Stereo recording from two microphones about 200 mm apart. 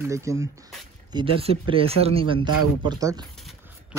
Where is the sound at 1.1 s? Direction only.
25° right (ahead or behind).